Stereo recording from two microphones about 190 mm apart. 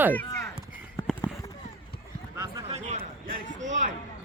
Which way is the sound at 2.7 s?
35° right (ahead or behind).